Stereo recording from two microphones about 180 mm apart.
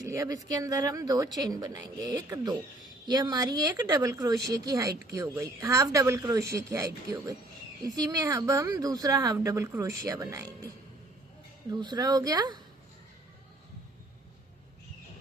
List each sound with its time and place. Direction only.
0.0 s speech: 15° right (ahead or behind)